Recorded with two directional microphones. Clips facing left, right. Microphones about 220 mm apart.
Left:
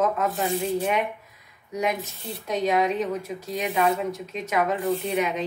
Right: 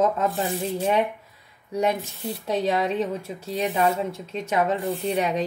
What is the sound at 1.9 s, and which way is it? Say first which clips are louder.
Speech: right 3 dB; 30° right (ahead or behind).